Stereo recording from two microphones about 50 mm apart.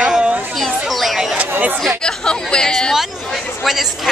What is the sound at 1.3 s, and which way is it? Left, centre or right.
Speech, right.